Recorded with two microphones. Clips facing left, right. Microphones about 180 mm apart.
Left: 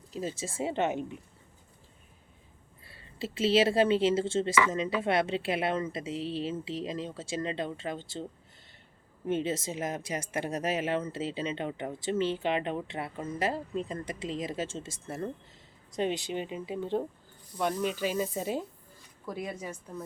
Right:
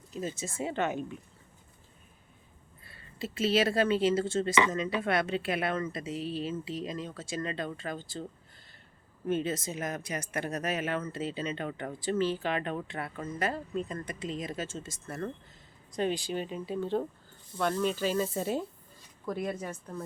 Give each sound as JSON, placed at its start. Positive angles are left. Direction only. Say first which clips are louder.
{"t": 0.1, "sound": "speech", "louder": "left 1 dB", "side_deg": 30}
{"t": 2.8, "sound": "speech", "louder": "left 1 dB", "side_deg": 30}
{"t": 9.2, "sound": "speech", "louder": "even", "side_deg": 25}